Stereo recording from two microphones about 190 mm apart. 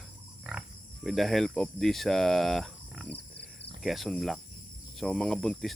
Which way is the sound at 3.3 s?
60° left (ahead or behind).